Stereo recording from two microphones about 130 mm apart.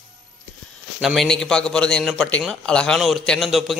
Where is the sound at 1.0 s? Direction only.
Centre (ahead or behind).